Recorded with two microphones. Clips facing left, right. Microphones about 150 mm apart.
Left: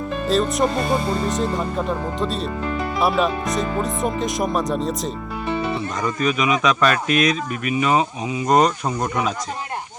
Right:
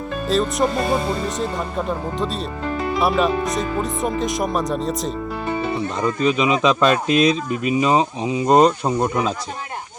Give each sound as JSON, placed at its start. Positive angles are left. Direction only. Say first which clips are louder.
{"t": 0.3, "sound": "speech", "louder": "even", "side_deg": 0}
{"t": 6.0, "sound": "speech", "louder": "right 3 dB", "side_deg": -25}